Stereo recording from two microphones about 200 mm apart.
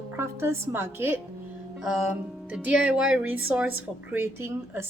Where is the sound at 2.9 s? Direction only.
5° right (ahead or behind).